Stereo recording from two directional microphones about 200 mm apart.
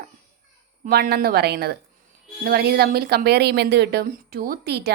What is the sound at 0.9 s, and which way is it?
A woman's voice, 50° right (ahead or behind).